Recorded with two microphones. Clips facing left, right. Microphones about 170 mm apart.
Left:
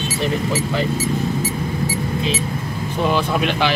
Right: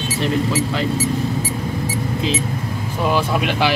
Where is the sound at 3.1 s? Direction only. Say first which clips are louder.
Right 2 dB; 10° right (ahead or behind).